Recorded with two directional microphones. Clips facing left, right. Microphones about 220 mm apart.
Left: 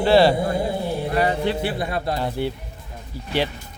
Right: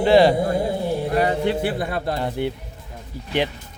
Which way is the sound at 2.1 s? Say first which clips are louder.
Even; 20° right (ahead or behind).